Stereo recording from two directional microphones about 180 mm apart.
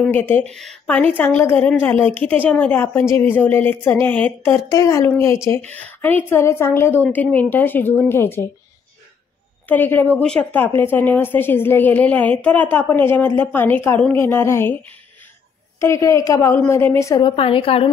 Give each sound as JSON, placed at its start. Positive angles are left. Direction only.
{"t": 0.0, "sound": "a woman's voice", "side_deg": 10}
{"t": 9.7, "sound": "a woman's voice", "side_deg": 10}
{"t": 17.4, "sound": "a woman's voice", "side_deg": 30}